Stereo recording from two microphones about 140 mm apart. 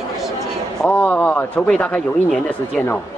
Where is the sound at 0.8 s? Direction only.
10° left (ahead or behind).